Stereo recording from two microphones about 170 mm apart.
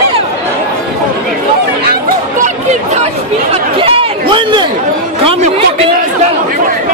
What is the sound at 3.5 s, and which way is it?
Chatter, 35° right (ahead or behind).